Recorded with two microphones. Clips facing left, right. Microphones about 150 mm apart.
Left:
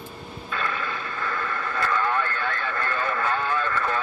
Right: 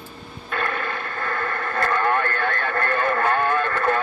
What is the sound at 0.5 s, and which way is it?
Radio, 55° right (ahead or behind).